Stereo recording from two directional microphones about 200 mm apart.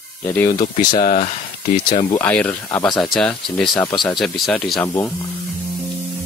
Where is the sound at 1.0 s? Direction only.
40° left (ahead or behind).